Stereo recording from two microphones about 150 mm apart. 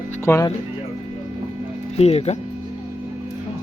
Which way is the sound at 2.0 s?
45° left (ahead or behind).